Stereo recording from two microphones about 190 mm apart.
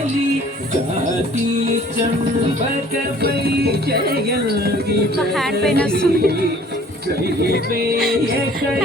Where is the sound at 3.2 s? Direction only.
55° right (ahead or behind).